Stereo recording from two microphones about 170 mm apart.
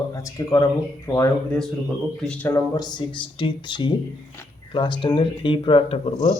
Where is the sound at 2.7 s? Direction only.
25° left (ahead or behind).